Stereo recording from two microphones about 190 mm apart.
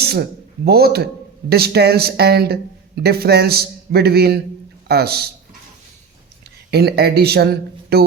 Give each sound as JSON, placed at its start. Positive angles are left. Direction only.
{"t": 0.0, "sound": "a man's voice", "side_deg": -55}
{"t": 6.7, "sound": "speech", "side_deg": -55}